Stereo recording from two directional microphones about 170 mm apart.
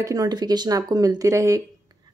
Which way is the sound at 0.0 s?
20° right (ahead or behind).